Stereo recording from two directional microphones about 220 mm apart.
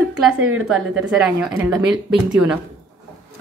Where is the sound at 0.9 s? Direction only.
Centre (ahead or behind).